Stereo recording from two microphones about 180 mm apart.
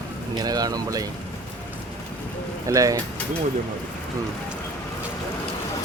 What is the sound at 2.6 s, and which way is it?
Speech, 20° right (ahead or behind).